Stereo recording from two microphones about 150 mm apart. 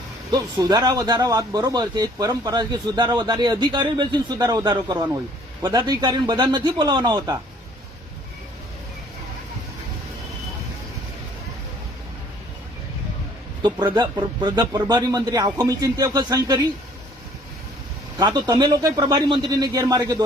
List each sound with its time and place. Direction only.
0.3 s speech: 25° right (ahead or behind)
13.6 s speech: 25° right (ahead or behind)
18.2 s speech: 25° right (ahead or behind)